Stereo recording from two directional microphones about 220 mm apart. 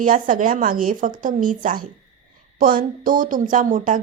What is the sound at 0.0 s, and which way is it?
A woman's voice, 40° right (ahead or behind).